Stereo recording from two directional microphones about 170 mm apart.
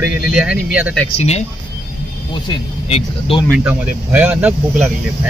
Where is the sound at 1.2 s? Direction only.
40° left (ahead or behind).